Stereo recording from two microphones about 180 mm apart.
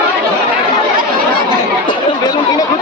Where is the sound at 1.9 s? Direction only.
25° left (ahead or behind).